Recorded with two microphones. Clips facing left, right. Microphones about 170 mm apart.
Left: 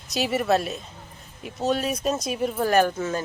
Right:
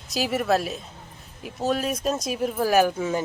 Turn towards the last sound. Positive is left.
turn(degrees=-10)  # may be behind; listen again after turning